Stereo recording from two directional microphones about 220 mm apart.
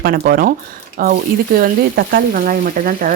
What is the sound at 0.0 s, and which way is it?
Speech, 45° right (ahead or behind).